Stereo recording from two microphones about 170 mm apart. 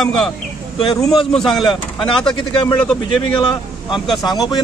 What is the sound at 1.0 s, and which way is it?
Speech, 25° left (ahead or behind).